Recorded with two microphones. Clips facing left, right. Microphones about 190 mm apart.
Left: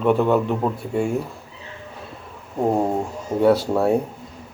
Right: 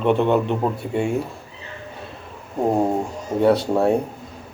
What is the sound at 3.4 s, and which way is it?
Speech, centre (ahead or behind).